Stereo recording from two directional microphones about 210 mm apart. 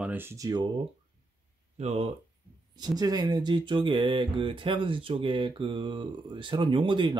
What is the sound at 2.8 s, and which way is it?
Speech, 20° right (ahead or behind).